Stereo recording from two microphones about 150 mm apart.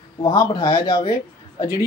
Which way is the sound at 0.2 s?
25° left (ahead or behind).